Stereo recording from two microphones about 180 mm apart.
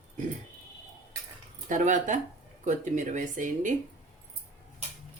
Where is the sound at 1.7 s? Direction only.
45° right (ahead or behind).